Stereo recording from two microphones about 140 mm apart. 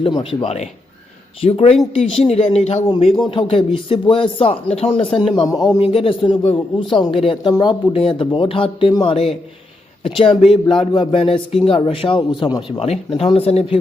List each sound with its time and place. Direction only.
0.0 s speech: 40° left (ahead or behind)
1.8 s speech: centre (ahead or behind)
2.3 s speech: 50° left (ahead or behind)
2.9 s speech: 40° left (ahead or behind)
12.8 s speech: 45° left (ahead or behind)